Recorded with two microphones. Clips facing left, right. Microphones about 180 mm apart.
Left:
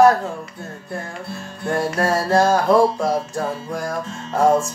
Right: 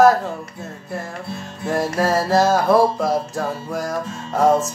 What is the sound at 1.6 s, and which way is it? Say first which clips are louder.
Speech: right 1 dB; 5° right (ahead or behind).